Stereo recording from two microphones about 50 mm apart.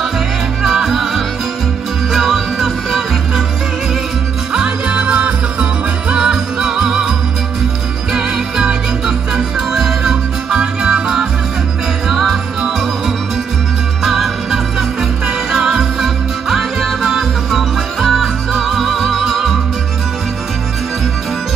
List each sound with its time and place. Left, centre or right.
0.6 s music: centre
4.6 s music: centre
8.1 s music: centre